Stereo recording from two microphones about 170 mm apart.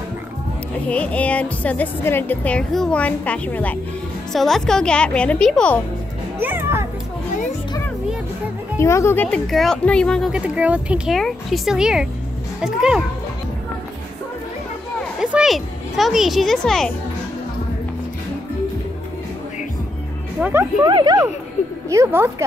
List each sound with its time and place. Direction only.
0.8 s speech: 10° left (ahead or behind)
6.4 s a child's voice: 15° right (ahead or behind)
8.7 s speech: 15° left (ahead or behind); by 13.0 s 5° right (ahead or behind)
15.1 s a child's voice: centre (ahead or behind)
20.3 s music: 10° right (ahead or behind)
20.8 s speech: 25° right (ahead or behind)